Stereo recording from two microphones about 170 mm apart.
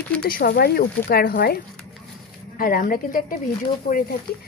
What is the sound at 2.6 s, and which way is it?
Speech, 60° left (ahead or behind).